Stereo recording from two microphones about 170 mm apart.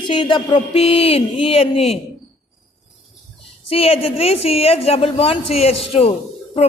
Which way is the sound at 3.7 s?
35° left (ahead or behind).